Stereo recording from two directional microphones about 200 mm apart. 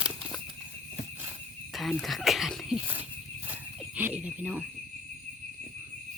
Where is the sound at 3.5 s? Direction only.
5° right (ahead or behind).